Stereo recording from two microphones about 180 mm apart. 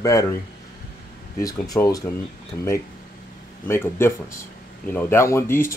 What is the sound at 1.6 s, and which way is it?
Speech, 20° left (ahead or behind).